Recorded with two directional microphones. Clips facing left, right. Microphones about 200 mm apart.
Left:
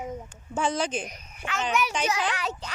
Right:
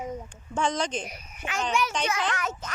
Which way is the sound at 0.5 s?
5° left (ahead or behind).